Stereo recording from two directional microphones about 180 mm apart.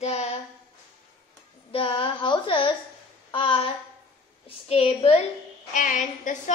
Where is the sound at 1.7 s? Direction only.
30° left (ahead or behind).